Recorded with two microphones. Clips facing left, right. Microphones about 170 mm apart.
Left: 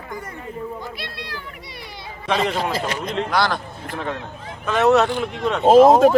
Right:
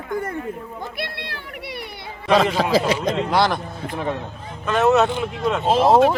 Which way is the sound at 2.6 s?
90° right.